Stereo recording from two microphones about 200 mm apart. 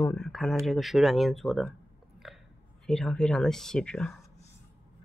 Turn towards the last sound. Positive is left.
turn(degrees=5)  # may be behind; listen again after turning